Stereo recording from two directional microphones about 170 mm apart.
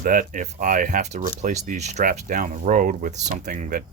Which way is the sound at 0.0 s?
55° right (ahead or behind).